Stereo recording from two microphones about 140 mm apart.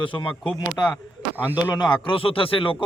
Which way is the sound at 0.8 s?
25° left (ahead or behind).